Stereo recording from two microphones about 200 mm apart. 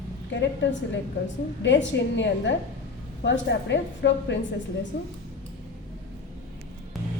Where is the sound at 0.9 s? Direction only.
65° left (ahead or behind).